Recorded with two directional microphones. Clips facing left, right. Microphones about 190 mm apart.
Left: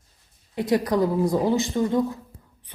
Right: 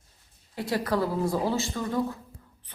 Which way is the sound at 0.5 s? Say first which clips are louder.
Left 6 dB; 20° left (ahead or behind).